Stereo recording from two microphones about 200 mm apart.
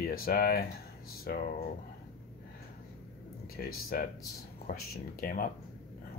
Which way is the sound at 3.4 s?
50° left (ahead or behind).